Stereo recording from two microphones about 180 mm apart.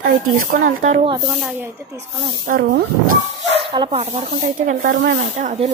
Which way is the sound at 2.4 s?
55° right (ahead or behind).